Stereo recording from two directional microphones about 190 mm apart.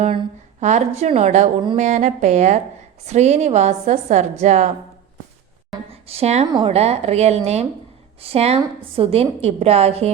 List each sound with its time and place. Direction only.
0.6 s a woman's voice: 35° right (ahead or behind)
5.9 s a woman's voice: 30° right (ahead or behind)